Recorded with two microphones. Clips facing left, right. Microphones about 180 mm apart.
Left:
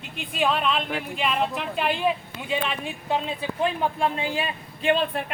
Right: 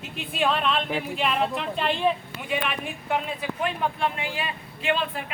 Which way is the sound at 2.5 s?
25° left (ahead or behind).